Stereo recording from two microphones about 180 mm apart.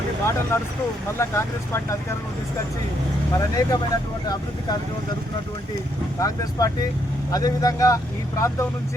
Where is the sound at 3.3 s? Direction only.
20° left (ahead or behind).